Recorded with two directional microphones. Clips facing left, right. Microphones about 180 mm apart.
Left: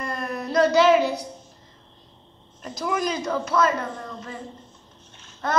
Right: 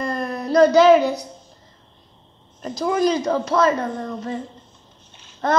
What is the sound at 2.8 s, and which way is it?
Speech, 30° right (ahead or behind).